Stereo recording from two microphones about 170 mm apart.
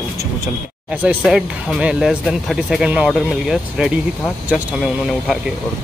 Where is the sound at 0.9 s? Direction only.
5° right (ahead or behind).